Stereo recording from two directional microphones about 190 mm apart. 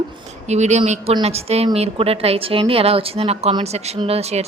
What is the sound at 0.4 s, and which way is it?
A woman's voice, 35° right (ahead or behind).